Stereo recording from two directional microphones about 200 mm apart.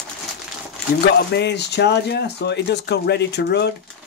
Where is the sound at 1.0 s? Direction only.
60° left (ahead or behind).